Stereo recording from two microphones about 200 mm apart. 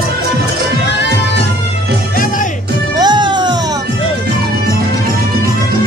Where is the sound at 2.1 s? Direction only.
45° left (ahead or behind).